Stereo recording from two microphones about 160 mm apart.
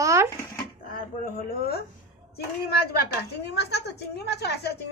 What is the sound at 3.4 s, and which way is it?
A woman's voice, 90° left.